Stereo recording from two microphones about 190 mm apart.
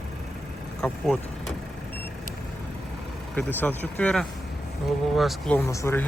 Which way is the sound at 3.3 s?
10° left (ahead or behind).